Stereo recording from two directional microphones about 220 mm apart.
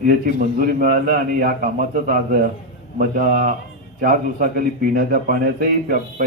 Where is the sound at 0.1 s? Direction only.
40° right (ahead or behind).